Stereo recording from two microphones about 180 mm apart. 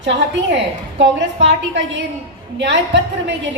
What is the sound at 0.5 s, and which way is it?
A woman's voice, 75° right (ahead or behind).